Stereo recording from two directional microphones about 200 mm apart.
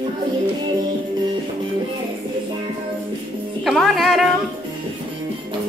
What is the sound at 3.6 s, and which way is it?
Speech, centre (ahead or behind).